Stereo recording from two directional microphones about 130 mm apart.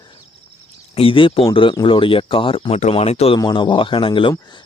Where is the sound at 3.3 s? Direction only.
35° left (ahead or behind).